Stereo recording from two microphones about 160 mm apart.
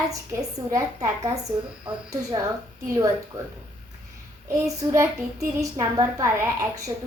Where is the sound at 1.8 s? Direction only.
20° right (ahead or behind).